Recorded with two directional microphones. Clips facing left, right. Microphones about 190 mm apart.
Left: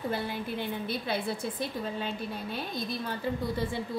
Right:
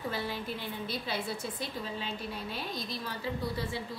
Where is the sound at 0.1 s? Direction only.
55° left (ahead or behind).